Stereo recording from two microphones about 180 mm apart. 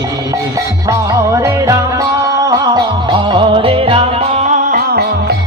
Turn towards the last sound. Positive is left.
turn(degrees=-45)  # may be behind; listen again after turning